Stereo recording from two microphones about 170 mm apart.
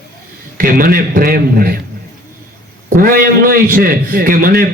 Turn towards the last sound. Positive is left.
turn(degrees=-60)  # may be behind; listen again after turning